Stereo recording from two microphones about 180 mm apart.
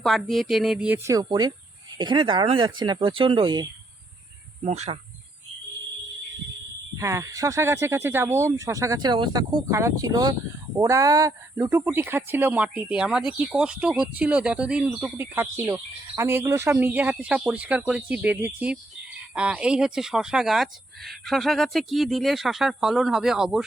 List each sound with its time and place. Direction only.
0.0 s speech: centre (ahead or behind); by 3.7 s 25° right (ahead or behind)
4.6 s speech: 40° right (ahead or behind)
6.9 s speech: 15° right (ahead or behind)